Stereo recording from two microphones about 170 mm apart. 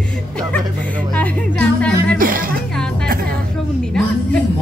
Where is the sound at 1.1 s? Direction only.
5° left (ahead or behind).